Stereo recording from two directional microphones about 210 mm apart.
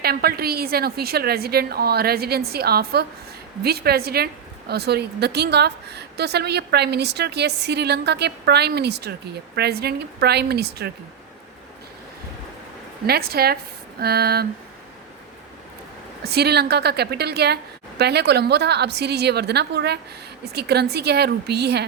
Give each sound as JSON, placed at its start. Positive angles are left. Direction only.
{"t": 0.0, "sound": "a woman's voice", "side_deg": -50}
{"t": 13.1, "sound": "a woman's voice", "side_deg": -45}
{"t": 16.2, "sound": "a woman's voice", "side_deg": -50}